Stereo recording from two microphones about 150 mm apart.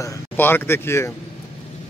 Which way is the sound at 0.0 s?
15° left (ahead or behind).